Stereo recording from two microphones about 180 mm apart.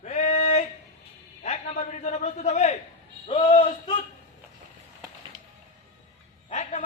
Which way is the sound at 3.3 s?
30° left (ahead or behind).